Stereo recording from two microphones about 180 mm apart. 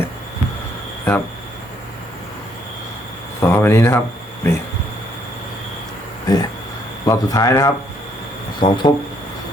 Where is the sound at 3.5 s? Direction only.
15° left (ahead or behind).